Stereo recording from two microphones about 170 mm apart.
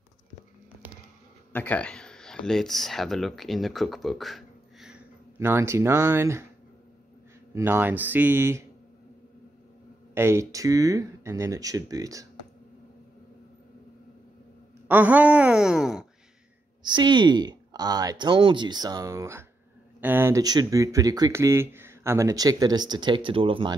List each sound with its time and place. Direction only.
1.5 s speech: 10° left (ahead or behind)
5.4 s speech: 15° right (ahead or behind)
7.5 s speech: 15° right (ahead or behind)
10.1 s speech: 15° right (ahead or behind)
14.9 s a woman's voice: 10° right (ahead or behind)
16.8 s speech: 25° right (ahead or behind)